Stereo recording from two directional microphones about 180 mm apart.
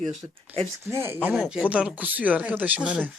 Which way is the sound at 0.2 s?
15° right (ahead or behind).